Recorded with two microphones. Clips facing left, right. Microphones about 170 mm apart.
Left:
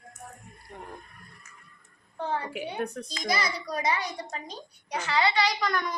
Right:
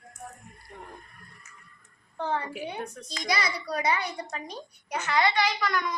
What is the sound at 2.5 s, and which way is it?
Speech, 65° left (ahead or behind).